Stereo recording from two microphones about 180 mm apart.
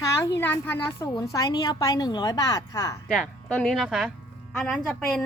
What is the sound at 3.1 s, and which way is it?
Speech, 5° left (ahead or behind).